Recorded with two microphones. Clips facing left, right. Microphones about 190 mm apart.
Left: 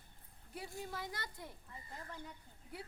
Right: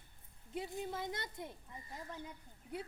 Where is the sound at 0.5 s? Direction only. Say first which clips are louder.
Right 4 dB; 20° right (ahead or behind).